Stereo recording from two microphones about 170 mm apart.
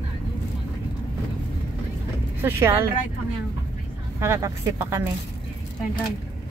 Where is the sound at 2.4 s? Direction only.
15° right (ahead or behind).